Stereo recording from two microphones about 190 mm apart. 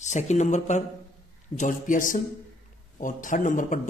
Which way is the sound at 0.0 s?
40° left (ahead or behind).